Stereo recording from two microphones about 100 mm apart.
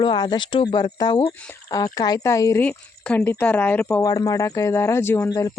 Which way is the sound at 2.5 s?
15° left (ahead or behind).